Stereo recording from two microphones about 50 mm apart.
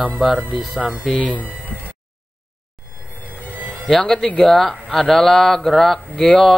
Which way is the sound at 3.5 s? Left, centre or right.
Right.